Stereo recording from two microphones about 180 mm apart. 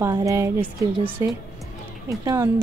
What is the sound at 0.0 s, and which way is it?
A woman's voice, 20° right (ahead or behind).